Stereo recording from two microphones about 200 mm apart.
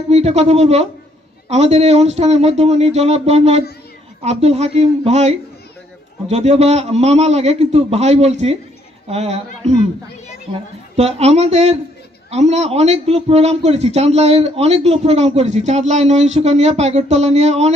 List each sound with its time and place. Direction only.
0.1 s a man's voice: 30° right (ahead or behind)